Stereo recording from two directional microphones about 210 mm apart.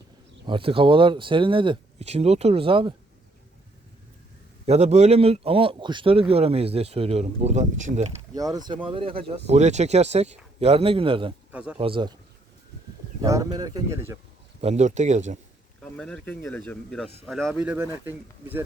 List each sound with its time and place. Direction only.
0.4 s speech: 25° right (ahead or behind)
4.6 s speech: 30° right (ahead or behind)
8.4 s speech: 20° right (ahead or behind)
11.5 s speech: 5° right (ahead or behind)
11.8 s speech: 25° right (ahead or behind)
13.2 s speech: 15° right (ahead or behind)
14.6 s speech: 30° right (ahead or behind)
15.8 s speech: 5° left (ahead or behind)